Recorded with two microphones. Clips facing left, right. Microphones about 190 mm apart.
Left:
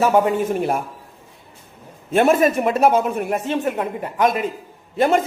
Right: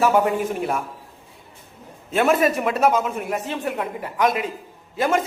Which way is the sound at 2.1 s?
45° left (ahead or behind).